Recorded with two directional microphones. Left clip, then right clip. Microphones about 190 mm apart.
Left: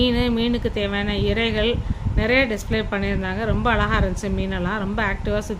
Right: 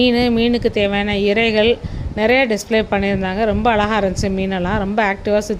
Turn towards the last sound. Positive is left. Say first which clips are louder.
# right 7 dB
turn(degrees=-25)  # may be behind; listen again after turning